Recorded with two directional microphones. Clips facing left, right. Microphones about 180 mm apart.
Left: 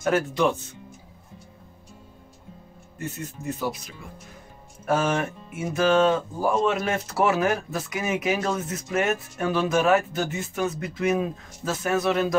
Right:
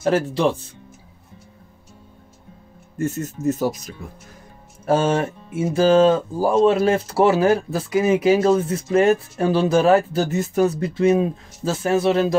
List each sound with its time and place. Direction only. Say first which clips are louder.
0.0 s speech: right 3 dB; 30° right (ahead or behind)
3.0 s speech: right 10 dB; 45° right (ahead or behind)
4.8 s speech: right 5 dB; 30° right (ahead or behind)